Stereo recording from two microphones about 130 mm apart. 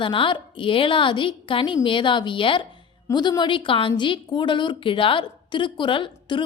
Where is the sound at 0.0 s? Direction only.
40° left (ahead or behind).